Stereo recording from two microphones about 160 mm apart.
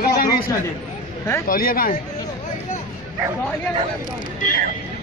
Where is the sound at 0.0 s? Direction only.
70° left (ahead or behind).